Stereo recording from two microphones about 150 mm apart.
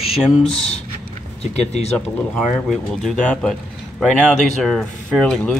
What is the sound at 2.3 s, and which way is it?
Speech, 5° left (ahead or behind).